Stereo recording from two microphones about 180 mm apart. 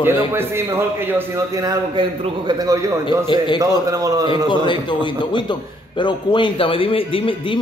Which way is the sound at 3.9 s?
20° right (ahead or behind).